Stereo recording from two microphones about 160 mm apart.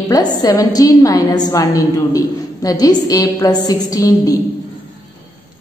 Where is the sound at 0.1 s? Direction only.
25° left (ahead or behind).